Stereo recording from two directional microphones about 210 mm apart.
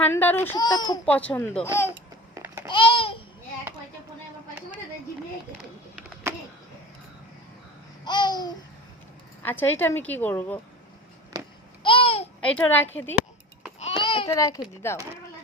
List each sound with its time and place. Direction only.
0.0 s speech: 10° left (ahead or behind)
1.0 s speech: 5° left (ahead or behind)
2.3 s babbling: 15° right (ahead or behind)
2.6 s babbling: 25° left (ahead or behind)
8.0 s babbling: 20° left (ahead or behind)
9.4 s speech: 10° left (ahead or behind)
11.8 s babbling: 25° left (ahead or behind)
12.4 s speech: 5° left (ahead or behind)
13.7 s a sound: 25° left (ahead or behind)
14.3 s speech: 15° left (ahead or behind)